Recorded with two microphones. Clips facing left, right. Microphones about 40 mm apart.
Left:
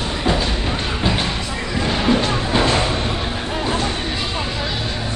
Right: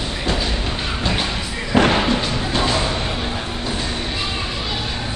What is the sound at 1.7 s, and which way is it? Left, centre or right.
Music, right.